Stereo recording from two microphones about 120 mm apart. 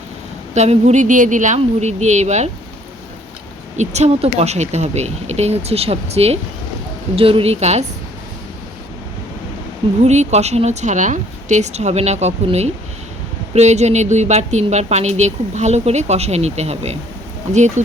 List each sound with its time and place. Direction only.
0.5 s a woman's voice: 70° right (ahead or behind)
3.8 s speech: 65° right (ahead or behind)
10.0 s a woman's voice: 70° right (ahead or behind)
17.5 s speech: 80° right